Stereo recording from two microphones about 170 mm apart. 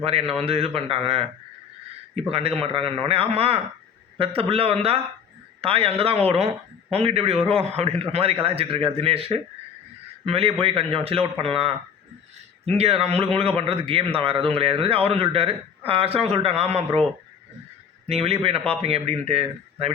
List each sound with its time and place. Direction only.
0.0 s a man's voice: 35° right (ahead or behind)
2.6 s a man's voice: 35° right (ahead or behind)
18.1 s a man's voice: 35° right (ahead or behind)